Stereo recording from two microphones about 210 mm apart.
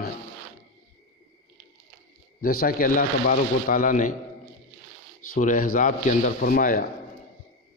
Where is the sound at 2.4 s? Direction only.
45° left (ahead or behind).